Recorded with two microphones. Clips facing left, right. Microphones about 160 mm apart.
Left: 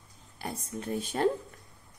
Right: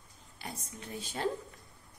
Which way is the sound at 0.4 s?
55° left (ahead or behind).